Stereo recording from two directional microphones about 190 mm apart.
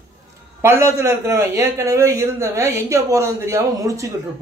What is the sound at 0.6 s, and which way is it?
A man's voice, 15° right (ahead or behind).